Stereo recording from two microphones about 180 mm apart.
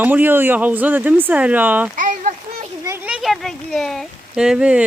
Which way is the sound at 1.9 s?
45° right (ahead or behind).